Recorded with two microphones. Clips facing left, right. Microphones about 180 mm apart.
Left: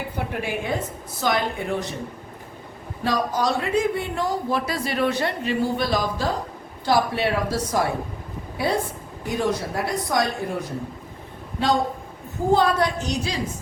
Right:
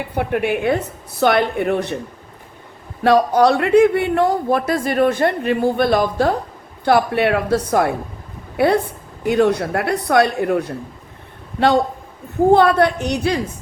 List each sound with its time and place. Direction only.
0.1 s speech: 60° right (ahead or behind)
3.0 s a woman's voice: 65° right (ahead or behind)
12.5 s speech: 60° right (ahead or behind)